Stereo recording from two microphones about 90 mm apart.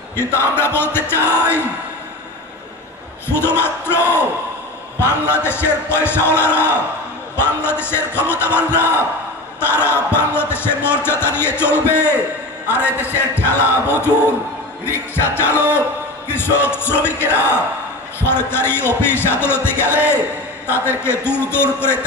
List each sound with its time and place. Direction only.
0.1 s a man's voice: 25° left (ahead or behind)
3.3 s a man's voice: 25° left (ahead or behind)
5.2 s a man's voice: 25° left (ahead or behind)